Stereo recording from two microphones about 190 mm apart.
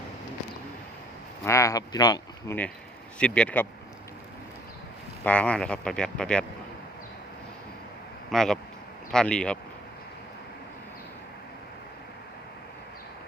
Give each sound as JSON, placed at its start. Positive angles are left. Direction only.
{"t": 1.5, "sound": "speech", "side_deg": 15}
{"t": 3.2, "sound": "speech", "side_deg": 5}
{"t": 5.2, "sound": "speech", "side_deg": 5}
{"t": 8.3, "sound": "speech", "side_deg": 0}